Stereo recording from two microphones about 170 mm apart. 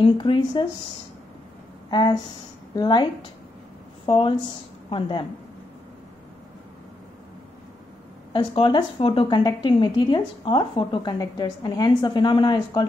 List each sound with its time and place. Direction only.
0.0 s a woman's voice: 30° left (ahead or behind)
1.9 s a woman's voice: 25° left (ahead or behind)
8.3 s a woman's voice: 30° left (ahead or behind)